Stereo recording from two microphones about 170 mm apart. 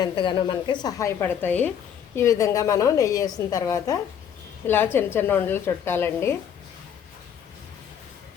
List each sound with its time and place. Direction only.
0.0 s a woman's voice: 30° left (ahead or behind)